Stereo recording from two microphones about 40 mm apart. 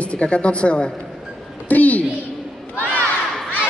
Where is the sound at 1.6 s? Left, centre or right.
Left.